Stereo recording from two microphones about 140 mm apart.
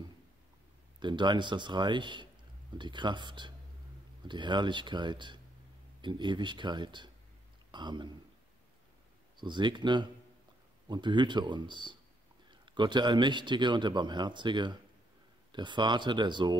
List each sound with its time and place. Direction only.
0.9 s a man's voice: 35° right (ahead or behind)
9.4 s a man's voice: 35° right (ahead or behind)